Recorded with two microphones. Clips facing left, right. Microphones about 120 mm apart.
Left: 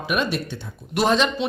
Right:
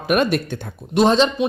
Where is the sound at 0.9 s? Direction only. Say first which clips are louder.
Right 5 dB; 30° right (ahead or behind).